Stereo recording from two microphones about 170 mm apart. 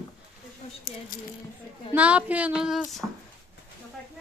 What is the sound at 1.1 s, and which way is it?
Speech, 55° left (ahead or behind).